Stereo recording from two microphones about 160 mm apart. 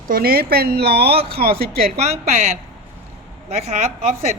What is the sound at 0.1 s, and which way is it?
Speech, 70° right (ahead or behind).